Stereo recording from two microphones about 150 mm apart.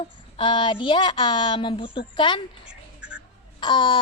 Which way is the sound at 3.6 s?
30° left (ahead or behind).